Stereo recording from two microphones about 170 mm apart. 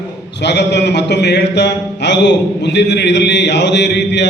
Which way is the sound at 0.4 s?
85° left.